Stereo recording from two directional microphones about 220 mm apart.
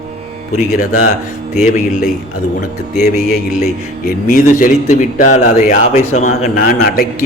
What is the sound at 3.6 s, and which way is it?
A man's voice, 35° left (ahead or behind).